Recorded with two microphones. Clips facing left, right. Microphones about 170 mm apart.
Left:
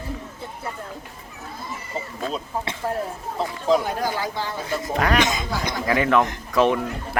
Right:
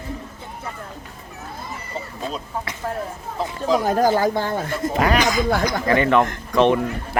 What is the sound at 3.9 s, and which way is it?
Speech, 45° right (ahead or behind).